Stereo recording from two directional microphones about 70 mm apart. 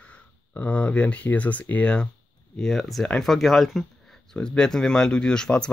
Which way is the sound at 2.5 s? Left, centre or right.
Centre.